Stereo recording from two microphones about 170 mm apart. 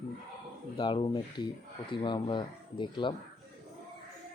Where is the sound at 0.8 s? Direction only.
30° left (ahead or behind).